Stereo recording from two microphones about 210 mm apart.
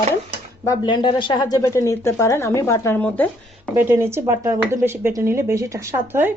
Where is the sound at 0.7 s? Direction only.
20° left (ahead or behind).